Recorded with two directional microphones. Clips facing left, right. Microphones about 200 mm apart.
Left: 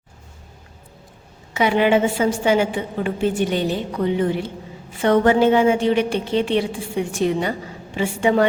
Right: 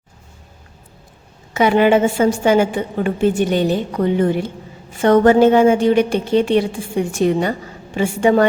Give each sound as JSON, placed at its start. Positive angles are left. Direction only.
{"t": 1.5, "sound": "a woman's voice", "side_deg": -50}